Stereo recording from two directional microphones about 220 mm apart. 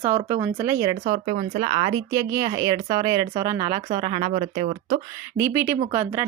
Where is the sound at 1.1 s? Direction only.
30° right (ahead or behind).